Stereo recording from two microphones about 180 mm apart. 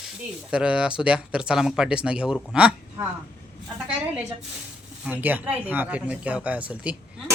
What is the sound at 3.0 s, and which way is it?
Speech, 15° right (ahead or behind).